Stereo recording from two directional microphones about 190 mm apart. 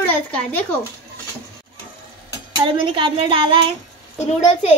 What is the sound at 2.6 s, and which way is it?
Speech, 25° right (ahead or behind).